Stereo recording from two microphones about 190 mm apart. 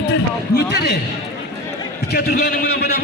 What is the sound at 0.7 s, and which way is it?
Speech, 60° left (ahead or behind).